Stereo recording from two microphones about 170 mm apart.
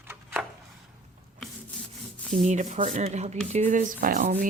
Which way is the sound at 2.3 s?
45° right (ahead or behind).